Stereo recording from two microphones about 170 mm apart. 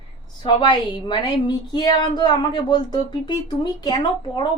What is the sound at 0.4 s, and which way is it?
A woman's voice, 25° left (ahead or behind).